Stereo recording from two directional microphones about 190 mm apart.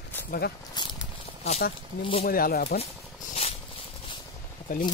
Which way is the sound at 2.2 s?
50° left (ahead or behind).